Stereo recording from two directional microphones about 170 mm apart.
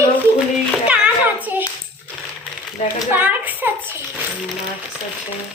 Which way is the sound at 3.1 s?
10° right (ahead or behind).